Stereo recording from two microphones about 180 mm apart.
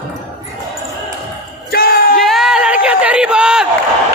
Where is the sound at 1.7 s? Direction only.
60° left (ahead or behind).